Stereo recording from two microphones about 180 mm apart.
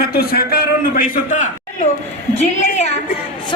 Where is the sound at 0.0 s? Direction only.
60° left (ahead or behind).